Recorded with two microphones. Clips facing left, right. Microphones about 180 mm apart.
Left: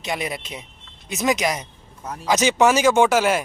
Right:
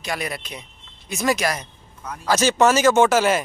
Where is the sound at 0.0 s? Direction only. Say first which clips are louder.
Left 1 dB; 20° left (ahead or behind).